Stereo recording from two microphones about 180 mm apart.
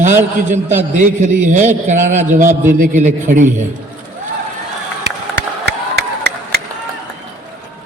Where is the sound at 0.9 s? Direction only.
45° right (ahead or behind).